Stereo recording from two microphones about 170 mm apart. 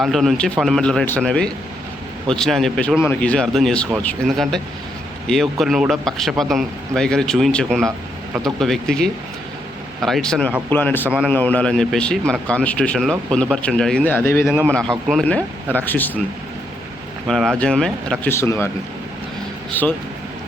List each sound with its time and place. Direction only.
0.0 s speech: centre (ahead or behind)
7.9 s speech: 20° right (ahead or behind)
8.5 s speech: centre (ahead or behind)
14.4 s a man's voice: 10° right (ahead or behind)
14.7 s speech: 5° left (ahead or behind)
17.2 s speech: centre (ahead or behind)
18.3 s speech: 15° left (ahead or behind)